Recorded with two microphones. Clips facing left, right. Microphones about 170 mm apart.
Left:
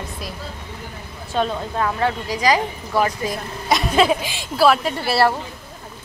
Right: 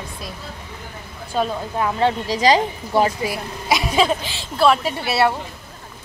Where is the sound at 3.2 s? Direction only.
5° right (ahead or behind); by 4.7 s 15° left (ahead or behind).